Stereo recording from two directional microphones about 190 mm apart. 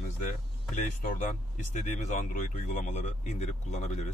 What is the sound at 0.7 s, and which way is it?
Speech, 45° left (ahead or behind).